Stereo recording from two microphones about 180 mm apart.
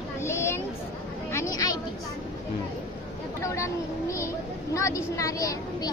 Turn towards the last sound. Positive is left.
turn(degrees=20)  # may be behind; listen again after turning